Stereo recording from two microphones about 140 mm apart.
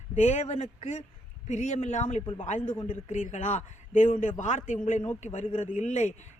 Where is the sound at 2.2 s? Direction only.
35° left (ahead or behind).